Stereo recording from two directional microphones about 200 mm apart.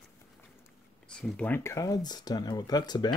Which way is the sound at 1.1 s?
5° left (ahead or behind).